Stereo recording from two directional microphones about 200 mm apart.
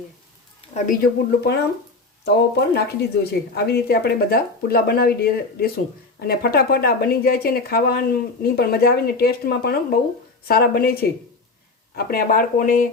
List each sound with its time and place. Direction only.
0.7 s a woman's voice: 45° left (ahead or behind)
2.2 s a woman's voice: 55° left (ahead or behind)